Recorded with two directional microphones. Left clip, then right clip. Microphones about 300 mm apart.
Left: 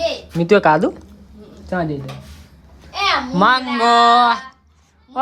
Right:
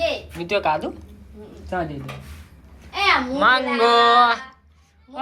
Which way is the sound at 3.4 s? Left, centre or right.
Centre.